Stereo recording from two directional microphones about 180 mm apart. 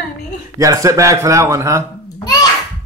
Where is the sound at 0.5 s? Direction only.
15° right (ahead or behind).